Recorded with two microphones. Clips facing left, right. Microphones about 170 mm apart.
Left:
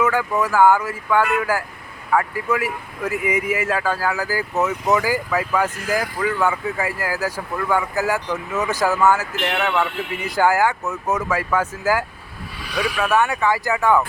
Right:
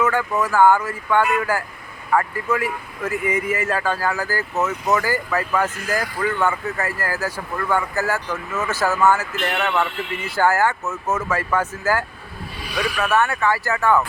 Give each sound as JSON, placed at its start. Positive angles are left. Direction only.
{"t": 0.0, "sound": "speech", "side_deg": 10}